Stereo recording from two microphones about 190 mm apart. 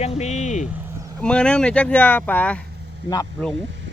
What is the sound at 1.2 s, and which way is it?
Speech, 5° left (ahead or behind).